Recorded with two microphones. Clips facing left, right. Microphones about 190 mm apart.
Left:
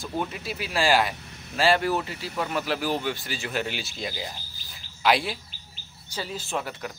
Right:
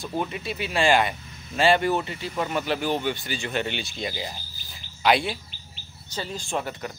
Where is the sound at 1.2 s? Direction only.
65° left (ahead or behind).